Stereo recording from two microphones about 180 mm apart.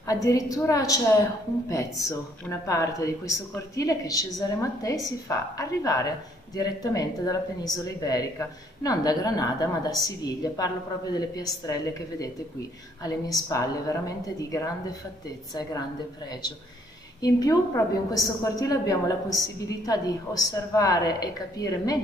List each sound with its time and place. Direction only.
0.0 s speech: 20° left (ahead or behind)
17.2 s speech: 20° left (ahead or behind)